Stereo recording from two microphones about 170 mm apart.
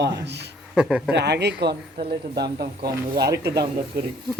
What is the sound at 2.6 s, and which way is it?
Speech, 70° right (ahead or behind).